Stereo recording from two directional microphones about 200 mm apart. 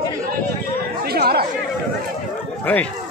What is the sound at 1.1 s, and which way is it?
Chatter, 50° right (ahead or behind).